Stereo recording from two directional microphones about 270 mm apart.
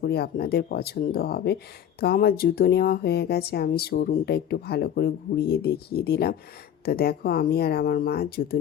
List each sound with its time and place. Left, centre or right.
0.0 s speech: left